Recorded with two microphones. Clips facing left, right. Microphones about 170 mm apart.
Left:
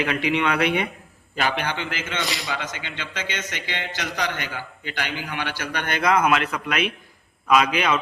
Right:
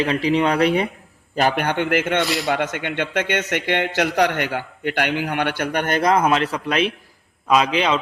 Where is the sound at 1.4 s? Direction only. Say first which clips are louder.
Right 6 dB; 50° right (ahead or behind).